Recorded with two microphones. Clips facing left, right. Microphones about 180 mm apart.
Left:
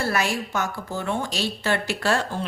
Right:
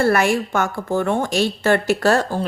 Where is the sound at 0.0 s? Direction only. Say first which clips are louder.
Right 8 dB; 55° right (ahead or behind).